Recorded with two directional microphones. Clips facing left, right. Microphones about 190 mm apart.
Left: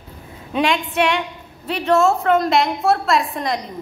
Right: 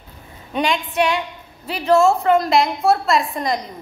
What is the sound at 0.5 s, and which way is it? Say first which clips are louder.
A woman's voice: left 2 dB; centre (ahead or behind).